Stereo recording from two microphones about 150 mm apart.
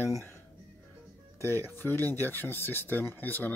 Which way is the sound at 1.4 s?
15° left (ahead or behind).